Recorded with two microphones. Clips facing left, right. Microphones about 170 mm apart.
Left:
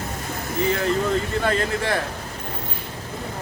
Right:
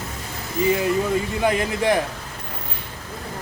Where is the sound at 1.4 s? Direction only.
15° right (ahead or behind).